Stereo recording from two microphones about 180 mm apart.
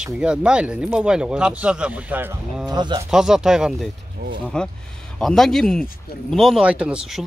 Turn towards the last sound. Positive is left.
turn(degrees=-5)  # may be behind; listen again after turning